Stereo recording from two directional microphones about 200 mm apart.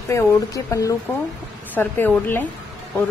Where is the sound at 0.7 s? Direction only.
15° left (ahead or behind).